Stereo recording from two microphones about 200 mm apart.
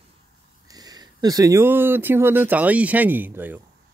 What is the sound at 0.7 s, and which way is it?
Speech, 20° right (ahead or behind).